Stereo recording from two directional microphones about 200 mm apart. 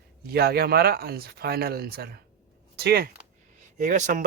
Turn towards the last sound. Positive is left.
turn(degrees=-40)  # may be behind; listen again after turning